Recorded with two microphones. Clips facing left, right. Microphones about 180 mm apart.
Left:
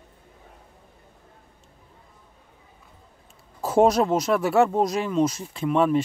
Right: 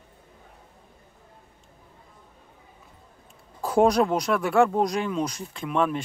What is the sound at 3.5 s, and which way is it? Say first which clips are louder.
Speech: left 1 dB; 5° left (ahead or behind).